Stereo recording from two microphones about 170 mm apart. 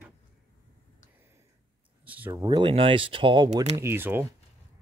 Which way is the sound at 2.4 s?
30° right (ahead or behind).